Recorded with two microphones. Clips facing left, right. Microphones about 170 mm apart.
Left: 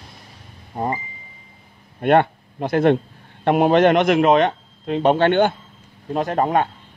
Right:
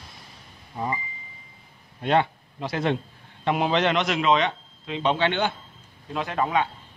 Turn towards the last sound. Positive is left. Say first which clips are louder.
# left 6 dB
turn(degrees=45)  # may be behind; listen again after turning